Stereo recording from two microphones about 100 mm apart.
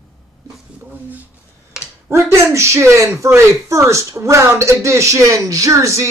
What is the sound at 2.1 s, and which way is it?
A man's voice, 30° right (ahead or behind).